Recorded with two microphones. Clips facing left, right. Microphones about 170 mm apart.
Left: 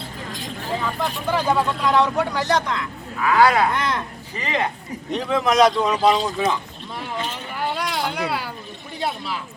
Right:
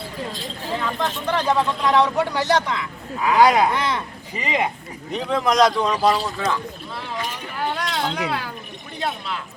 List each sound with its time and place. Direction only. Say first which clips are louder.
1.0 s speech: even; 10° left (ahead or behind)
3.2 s speech: right 1 dB; 20° right (ahead or behind)
3.7 s speech: even; centre (ahead or behind)
4.4 s speech: right 1 dB; 10° right (ahead or behind)
5.1 s speech: left 1 dB; centre (ahead or behind); by 6.6 s 20° left (ahead or behind)
7.7 s a sound: even; 10° left (ahead or behind)
9.0 s speech: left 1 dB; 5° left (ahead or behind)